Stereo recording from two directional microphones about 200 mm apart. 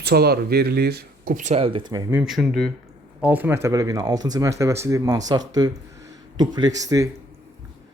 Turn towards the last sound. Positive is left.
turn(degrees=-15)  # may be behind; listen again after turning